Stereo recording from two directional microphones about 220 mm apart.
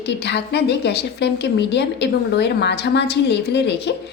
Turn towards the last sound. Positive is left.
turn(degrees=50)  # may be behind; listen again after turning